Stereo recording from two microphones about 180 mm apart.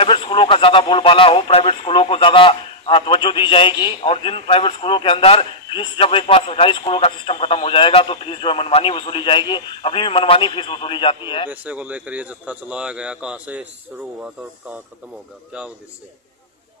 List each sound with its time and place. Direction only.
0.0 s a man's voice: 30° left (ahead or behind)
11.6 s speech: 10° right (ahead or behind)